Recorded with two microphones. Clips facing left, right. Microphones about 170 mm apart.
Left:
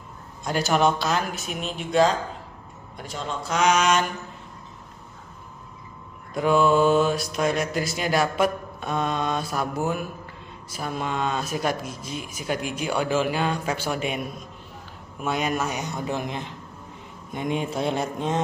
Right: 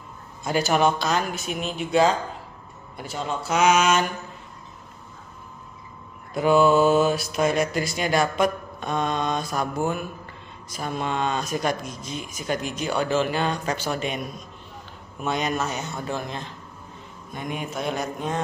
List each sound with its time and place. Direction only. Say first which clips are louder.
0.4 s mantra: right 1 dB; centre (ahead or behind)
3.0 s speech: right 2 dB; 5° right (ahead or behind)
6.3 s mantra: right 2 dB; 5° right (ahead or behind)
10.7 s speech: right 1 dB; 5° left (ahead or behind)
17.3 s mantra: left 4 dB; 20° left (ahead or behind)